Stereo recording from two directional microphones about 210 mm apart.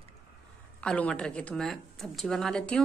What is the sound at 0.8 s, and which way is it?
A woman's voice, 5° left (ahead or behind).